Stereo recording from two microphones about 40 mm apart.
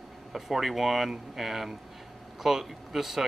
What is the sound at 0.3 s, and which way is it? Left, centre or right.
Speech, centre.